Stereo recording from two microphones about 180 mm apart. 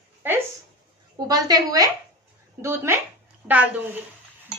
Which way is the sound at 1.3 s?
20° right (ahead or behind).